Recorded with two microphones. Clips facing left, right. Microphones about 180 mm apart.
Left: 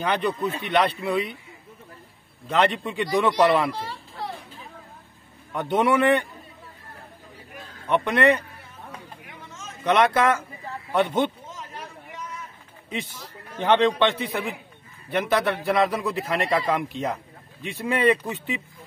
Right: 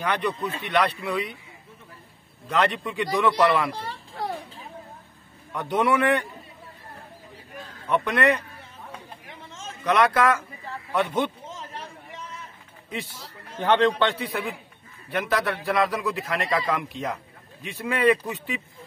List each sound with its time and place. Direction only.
0.0 s a man's voice: 25° left (ahead or behind)
2.4 s a man's voice: 25° left (ahead or behind)
5.5 s a man's voice: 25° left (ahead or behind)
7.9 s a man's voice: 25° left (ahead or behind)
9.3 s a sound: 30° right (ahead or behind)
9.8 s a man's voice: 25° left (ahead or behind)
11.5 s a sound: 30° right (ahead or behind)
13.6 s a man's voice: 20° left (ahead or behind)